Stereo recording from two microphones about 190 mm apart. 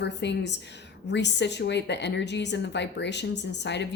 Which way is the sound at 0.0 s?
65° left (ahead or behind).